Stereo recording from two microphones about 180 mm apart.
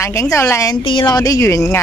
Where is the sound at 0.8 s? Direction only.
25° left (ahead or behind).